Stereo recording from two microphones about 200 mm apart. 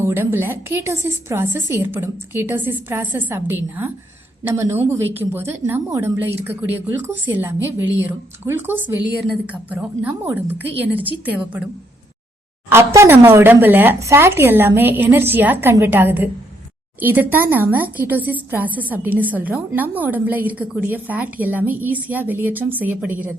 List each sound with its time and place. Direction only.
0.0 s a woman's voice: 10° right (ahead or behind)
8.4 s a woman's voice: 10° right (ahead or behind)